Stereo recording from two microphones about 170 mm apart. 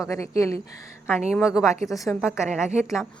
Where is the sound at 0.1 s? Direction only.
15° left (ahead or behind).